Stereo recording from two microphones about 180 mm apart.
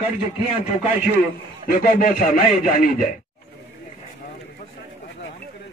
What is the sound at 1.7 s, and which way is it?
Speech, 50° left (ahead or behind).